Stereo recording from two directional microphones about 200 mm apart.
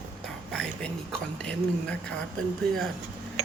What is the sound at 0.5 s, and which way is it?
Speech, 5° left (ahead or behind).